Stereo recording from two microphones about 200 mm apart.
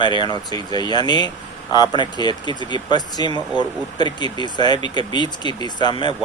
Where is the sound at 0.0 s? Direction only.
20° left (ahead or behind).